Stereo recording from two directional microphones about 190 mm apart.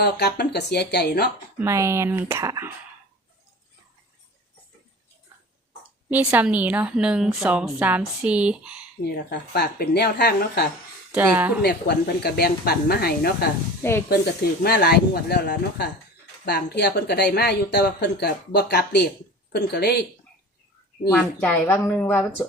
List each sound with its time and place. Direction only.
0.0 s speech: 60° left (ahead or behind)
1.5 s a woman's voice: 15° right (ahead or behind)
6.1 s a woman's voice: 10° right (ahead or behind)
9.3 s speech: 55° left (ahead or behind)
11.1 s a woman's voice: 10° right (ahead or behind)
11.6 s speech: 55° left (ahead or behind)
14.6 s speech: 55° left (ahead or behind)
21.1 s speech: 5° left (ahead or behind)